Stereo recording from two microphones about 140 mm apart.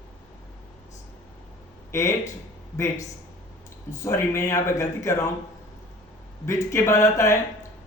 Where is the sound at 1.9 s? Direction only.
20° left (ahead or behind).